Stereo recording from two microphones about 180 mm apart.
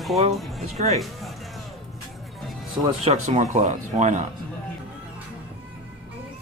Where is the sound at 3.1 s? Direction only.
40° right (ahead or behind).